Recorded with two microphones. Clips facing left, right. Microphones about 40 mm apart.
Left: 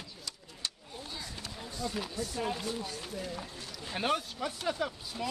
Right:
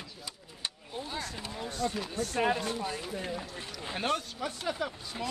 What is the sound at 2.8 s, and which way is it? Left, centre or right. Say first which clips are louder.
Speech: right 4 dB; right.